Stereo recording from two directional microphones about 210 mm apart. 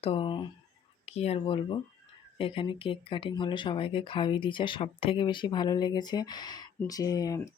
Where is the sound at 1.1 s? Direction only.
30° left (ahead or behind).